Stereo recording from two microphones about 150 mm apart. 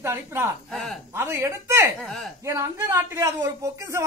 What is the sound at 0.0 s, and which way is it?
Speech, 15° right (ahead or behind).